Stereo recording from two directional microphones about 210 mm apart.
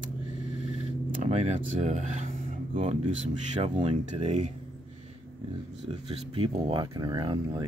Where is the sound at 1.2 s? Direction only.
35° right (ahead or behind).